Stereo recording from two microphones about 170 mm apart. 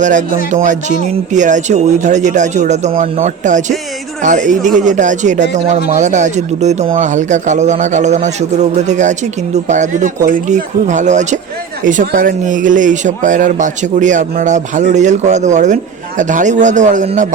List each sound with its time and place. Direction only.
0.0 s speech: 50° right (ahead or behind)